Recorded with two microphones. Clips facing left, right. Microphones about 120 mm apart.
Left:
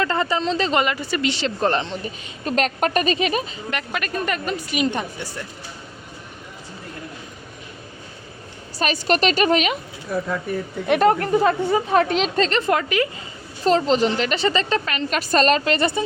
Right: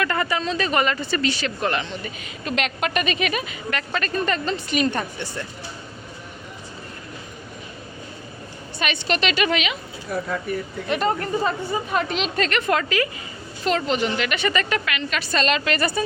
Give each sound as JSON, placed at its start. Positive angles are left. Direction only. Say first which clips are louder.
{"t": 0.0, "sound": "speech", "louder": "left 2 dB", "side_deg": 25}
{"t": 3.8, "sound": "a woman's voice", "louder": "right 1 dB", "side_deg": 10}
{"t": 8.8, "sound": "a woman's voice", "louder": "left 4 dB", "side_deg": 40}
{"t": 10.8, "sound": "speech", "louder": "left 6 dB", "side_deg": 65}
{"t": 12.1, "sound": "speech", "louder": "left 4 dB", "side_deg": 30}
{"t": 13.7, "sound": "a woman's voice", "louder": "left 5 dB", "side_deg": 35}